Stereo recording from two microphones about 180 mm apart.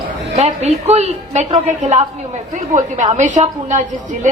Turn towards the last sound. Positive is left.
turn(degrees=-45)  # may be behind; listen again after turning